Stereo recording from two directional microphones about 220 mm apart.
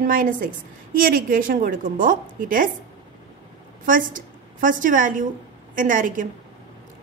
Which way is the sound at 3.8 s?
40° right (ahead or behind).